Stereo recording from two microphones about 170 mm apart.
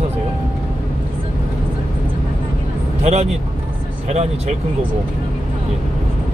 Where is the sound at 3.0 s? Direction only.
40° right (ahead or behind).